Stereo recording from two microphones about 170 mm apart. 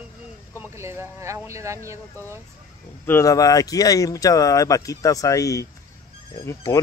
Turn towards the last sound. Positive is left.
turn(degrees=20)  # may be behind; listen again after turning